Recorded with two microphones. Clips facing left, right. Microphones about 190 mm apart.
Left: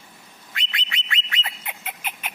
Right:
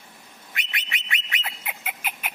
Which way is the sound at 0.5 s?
20° right (ahead or behind).